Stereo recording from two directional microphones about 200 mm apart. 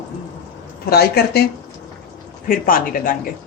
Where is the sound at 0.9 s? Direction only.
50° left (ahead or behind).